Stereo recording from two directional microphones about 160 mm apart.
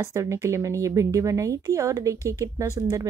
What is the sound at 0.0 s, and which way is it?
Speech, 20° right (ahead or behind).